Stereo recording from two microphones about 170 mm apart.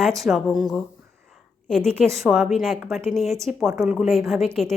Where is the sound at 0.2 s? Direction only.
Centre (ahead or behind).